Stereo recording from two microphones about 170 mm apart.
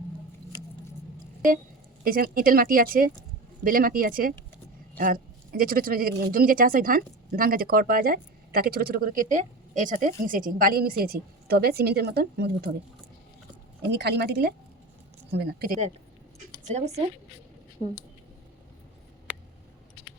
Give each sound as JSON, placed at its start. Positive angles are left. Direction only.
{"t": 2.0, "sound": "speech", "side_deg": -60}
{"t": 13.8, "sound": "a woman's voice", "side_deg": -75}
{"t": 16.6, "sound": "speech", "side_deg": -40}
{"t": 19.3, "sound": "a sound", "side_deg": -10}